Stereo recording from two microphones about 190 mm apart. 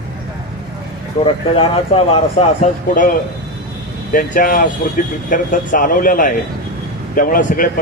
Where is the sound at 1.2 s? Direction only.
30° left (ahead or behind).